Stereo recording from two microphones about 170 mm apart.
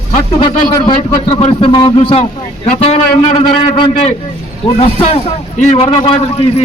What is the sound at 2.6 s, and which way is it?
A man's voice, 40° left (ahead or behind).